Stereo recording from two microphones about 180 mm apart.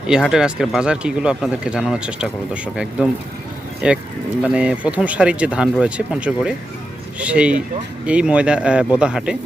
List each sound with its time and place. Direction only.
0.1 s speech: 5° right (ahead or behind)